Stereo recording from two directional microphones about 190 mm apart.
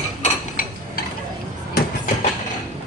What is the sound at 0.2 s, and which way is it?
Mechanisms, 45° left (ahead or behind).